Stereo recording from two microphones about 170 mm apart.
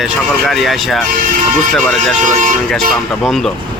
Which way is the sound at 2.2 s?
50° right (ahead or behind).